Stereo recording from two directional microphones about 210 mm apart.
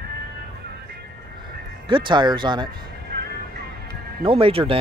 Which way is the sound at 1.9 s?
25° right (ahead or behind).